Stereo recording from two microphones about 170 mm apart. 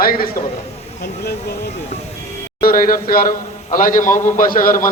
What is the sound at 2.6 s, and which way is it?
A man's voice, 55° left (ahead or behind).